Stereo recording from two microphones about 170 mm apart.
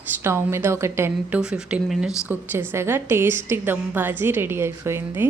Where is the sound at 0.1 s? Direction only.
15° right (ahead or behind).